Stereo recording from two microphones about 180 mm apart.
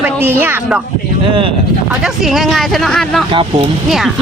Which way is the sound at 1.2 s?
30° right (ahead or behind).